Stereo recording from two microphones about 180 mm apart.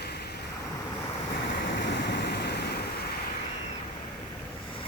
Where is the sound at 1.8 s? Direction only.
65° left (ahead or behind).